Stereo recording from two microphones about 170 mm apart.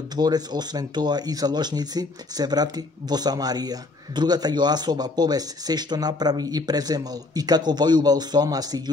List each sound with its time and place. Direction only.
0.1 s speech: 25° right (ahead or behind)